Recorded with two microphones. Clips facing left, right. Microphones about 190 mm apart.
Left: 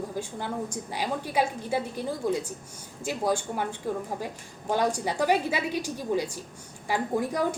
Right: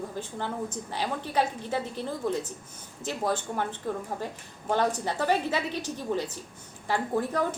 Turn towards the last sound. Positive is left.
turn(degrees=10)  # may be behind; listen again after turning